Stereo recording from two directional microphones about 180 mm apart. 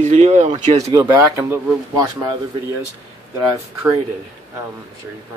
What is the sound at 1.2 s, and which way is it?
Speech, 10° right (ahead or behind).